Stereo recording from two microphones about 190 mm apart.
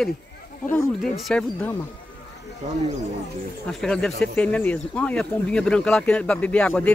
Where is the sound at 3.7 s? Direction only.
Centre (ahead or behind).